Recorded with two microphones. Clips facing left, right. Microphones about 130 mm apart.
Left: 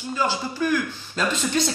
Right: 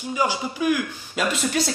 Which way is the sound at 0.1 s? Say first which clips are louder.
Right 1 dB; 10° right (ahead or behind).